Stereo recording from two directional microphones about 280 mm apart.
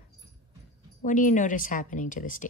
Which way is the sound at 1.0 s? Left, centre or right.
Left.